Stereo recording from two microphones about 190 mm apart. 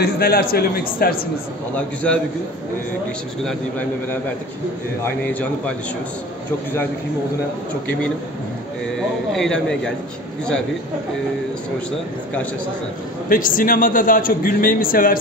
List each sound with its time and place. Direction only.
0.0 s a man's voice: 55° left (ahead or behind)
5.0 s a man's voice: 5° left (ahead or behind)
9.3 s speech: 5° left (ahead or behind)
13.3 s a man's voice: 45° left (ahead or behind)